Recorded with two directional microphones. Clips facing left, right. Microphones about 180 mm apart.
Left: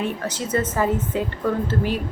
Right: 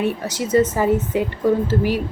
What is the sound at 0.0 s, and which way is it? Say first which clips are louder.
A woman's voice: right 4 dB; 10° right (ahead or behind).